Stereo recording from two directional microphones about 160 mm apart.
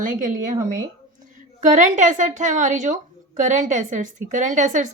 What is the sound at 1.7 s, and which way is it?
A woman's voice, 50° right (ahead or behind).